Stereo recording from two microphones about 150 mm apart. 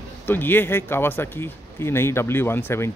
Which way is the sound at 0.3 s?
15° left (ahead or behind).